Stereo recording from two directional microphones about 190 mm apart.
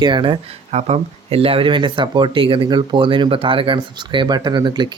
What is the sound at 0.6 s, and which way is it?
Speech, 35° right (ahead or behind).